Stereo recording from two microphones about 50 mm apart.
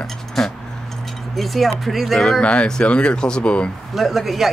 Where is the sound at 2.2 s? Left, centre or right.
Left.